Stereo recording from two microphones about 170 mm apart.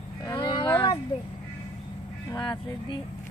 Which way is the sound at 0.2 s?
25° left (ahead or behind).